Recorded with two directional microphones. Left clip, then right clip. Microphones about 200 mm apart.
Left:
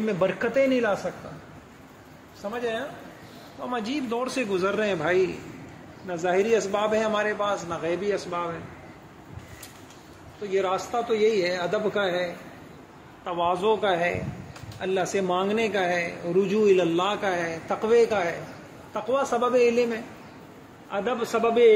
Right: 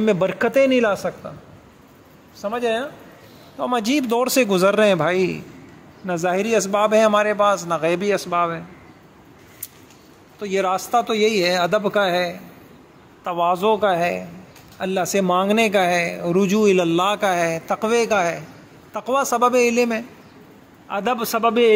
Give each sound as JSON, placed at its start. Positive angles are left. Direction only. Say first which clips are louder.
{"t": 0.0, "sound": "speech", "louder": "right 6 dB", "side_deg": -55}
{"t": 2.4, "sound": "speech", "louder": "right 7 dB", "side_deg": -60}
{"t": 10.4, "sound": "a man's voice", "louder": "right 5 dB", "side_deg": -60}